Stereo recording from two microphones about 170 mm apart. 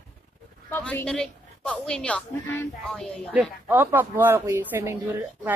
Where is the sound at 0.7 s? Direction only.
10° left (ahead or behind).